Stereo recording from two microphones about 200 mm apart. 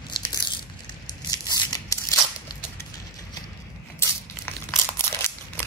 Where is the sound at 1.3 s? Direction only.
20° left (ahead or behind).